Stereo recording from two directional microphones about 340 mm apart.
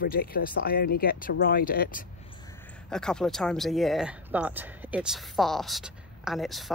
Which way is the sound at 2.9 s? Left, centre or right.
Centre.